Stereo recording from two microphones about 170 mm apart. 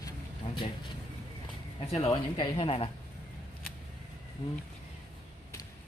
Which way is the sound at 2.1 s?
25° left (ahead or behind).